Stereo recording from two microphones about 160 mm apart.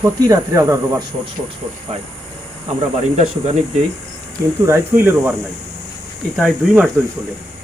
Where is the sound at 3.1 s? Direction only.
40° right (ahead or behind).